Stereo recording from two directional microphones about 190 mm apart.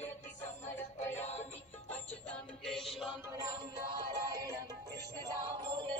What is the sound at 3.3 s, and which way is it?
Music, 20° right (ahead or behind).